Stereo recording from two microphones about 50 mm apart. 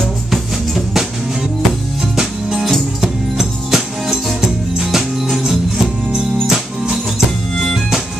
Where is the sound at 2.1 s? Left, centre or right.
Centre.